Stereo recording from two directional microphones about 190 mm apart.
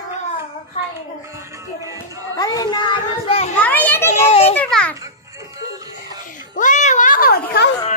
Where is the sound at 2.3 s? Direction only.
20° left (ahead or behind).